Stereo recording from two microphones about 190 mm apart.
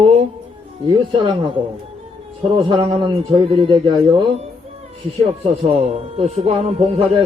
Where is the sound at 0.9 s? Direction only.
25° right (ahead or behind).